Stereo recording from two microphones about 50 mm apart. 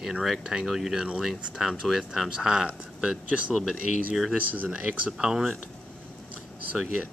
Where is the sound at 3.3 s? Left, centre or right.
Right.